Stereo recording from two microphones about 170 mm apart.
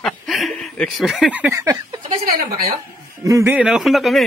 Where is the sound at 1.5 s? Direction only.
20° right (ahead or behind).